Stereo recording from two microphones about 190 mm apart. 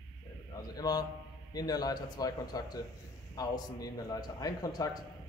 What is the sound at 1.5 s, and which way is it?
A man's voice, 20° left (ahead or behind).